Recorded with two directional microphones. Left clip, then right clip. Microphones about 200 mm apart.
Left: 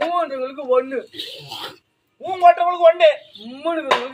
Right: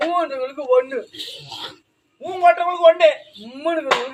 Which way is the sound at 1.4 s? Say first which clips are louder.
Left 1 dB; 45° left (ahead or behind).